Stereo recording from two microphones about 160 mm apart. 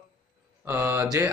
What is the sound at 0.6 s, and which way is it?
Mantra, 15° right (ahead or behind).